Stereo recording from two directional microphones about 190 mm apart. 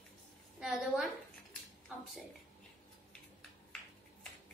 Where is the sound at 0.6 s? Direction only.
Centre (ahead or behind).